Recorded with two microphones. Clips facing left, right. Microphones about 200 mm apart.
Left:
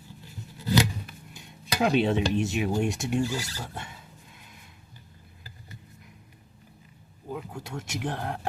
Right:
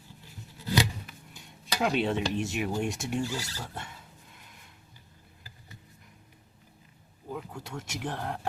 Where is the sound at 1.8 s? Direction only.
20° left (ahead or behind).